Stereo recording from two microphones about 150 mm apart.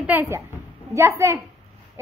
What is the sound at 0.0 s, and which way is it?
A child's voice, 10° right (ahead or behind).